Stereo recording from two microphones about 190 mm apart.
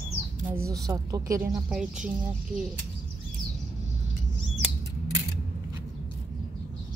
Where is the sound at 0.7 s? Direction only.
20° right (ahead or behind).